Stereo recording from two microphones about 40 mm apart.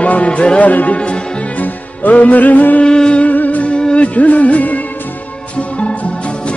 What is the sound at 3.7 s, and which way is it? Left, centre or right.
Music, left.